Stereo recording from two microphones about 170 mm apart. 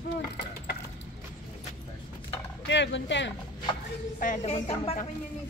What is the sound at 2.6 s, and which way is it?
Speech, 90° left.